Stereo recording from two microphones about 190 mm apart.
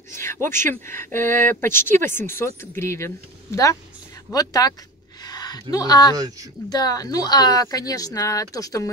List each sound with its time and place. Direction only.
0.1 s speech: 15° left (ahead or behind)
4.3 s speech: 20° left (ahead or behind)